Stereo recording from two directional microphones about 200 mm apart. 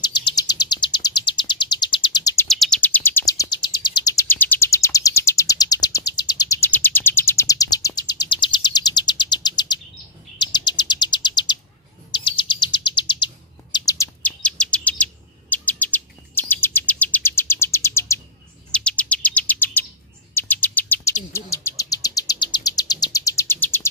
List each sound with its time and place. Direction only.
0.0 s bird: 20° left (ahead or behind)
2.4 s bird: centre (ahead or behind); by 13.3 s 25° left (ahead or behind)
13.7 s chirp: 15° left (ahead or behind)
18.7 s bird: 5° left (ahead or behind)
21.3 s bird vocalization: 15° left (ahead or behind)